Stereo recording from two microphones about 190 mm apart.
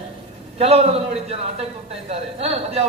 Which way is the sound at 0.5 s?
30° right (ahead or behind).